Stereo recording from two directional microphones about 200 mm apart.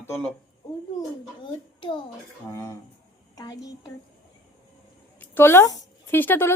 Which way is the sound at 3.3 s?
20° left (ahead or behind).